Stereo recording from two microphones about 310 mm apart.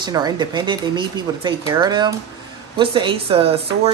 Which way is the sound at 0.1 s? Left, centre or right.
Centre.